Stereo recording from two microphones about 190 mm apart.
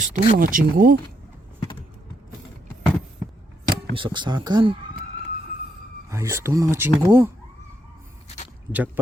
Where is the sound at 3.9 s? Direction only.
25° right (ahead or behind).